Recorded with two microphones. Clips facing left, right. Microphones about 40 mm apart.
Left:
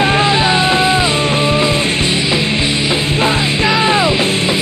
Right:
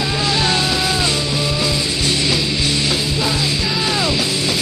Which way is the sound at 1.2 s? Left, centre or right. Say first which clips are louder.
Left 6 dB; left.